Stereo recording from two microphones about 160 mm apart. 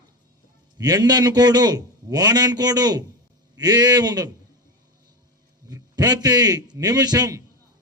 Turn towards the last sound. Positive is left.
turn(degrees=-25)  # may be behind; listen again after turning